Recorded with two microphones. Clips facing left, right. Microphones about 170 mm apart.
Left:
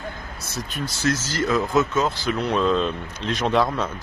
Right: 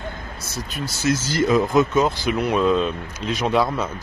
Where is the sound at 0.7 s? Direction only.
10° right (ahead or behind).